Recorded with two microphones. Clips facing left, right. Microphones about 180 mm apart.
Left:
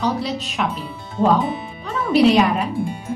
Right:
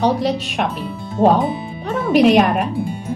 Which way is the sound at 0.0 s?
70° right (ahead or behind).